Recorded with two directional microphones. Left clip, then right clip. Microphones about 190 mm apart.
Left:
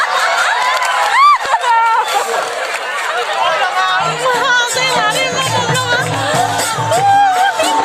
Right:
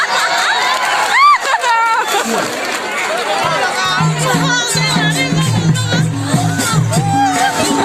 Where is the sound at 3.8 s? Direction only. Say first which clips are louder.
Left 2 dB; 40° left (ahead or behind).